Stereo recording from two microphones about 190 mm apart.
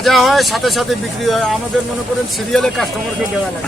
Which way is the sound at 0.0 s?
Centre (ahead or behind).